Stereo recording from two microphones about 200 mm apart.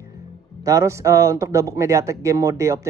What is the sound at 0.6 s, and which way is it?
Speech, 15° right (ahead or behind).